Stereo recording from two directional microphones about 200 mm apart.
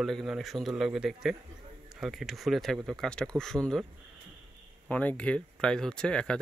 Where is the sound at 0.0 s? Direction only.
Centre (ahead or behind).